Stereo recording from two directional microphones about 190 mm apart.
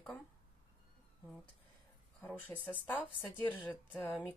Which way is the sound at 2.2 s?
10° left (ahead or behind).